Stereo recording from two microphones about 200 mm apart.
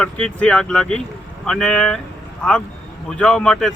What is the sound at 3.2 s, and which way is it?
Speech, 5° left (ahead or behind).